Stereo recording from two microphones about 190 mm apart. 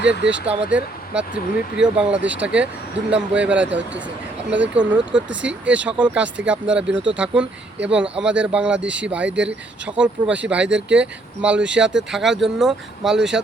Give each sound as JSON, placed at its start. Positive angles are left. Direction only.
{"t": 0.0, "sound": "speech", "side_deg": -70}
{"t": 0.4, "sound": "speech", "side_deg": -5}